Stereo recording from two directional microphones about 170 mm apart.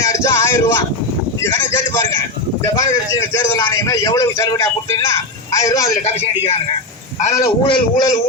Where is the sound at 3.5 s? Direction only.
20° left (ahead or behind).